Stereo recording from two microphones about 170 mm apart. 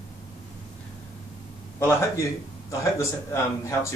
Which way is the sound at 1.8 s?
15° left (ahead or behind).